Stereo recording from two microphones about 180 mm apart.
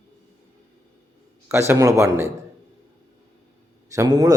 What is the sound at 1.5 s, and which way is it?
Speech, 15° right (ahead or behind).